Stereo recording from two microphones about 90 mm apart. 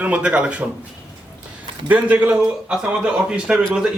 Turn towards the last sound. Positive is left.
turn(degrees=-10)  # may be behind; listen again after turning